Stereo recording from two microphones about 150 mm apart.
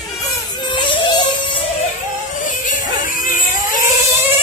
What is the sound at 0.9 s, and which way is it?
Music, 35° left (ahead or behind).